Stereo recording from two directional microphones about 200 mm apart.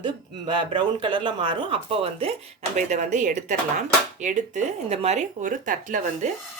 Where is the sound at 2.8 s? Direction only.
40° right (ahead or behind).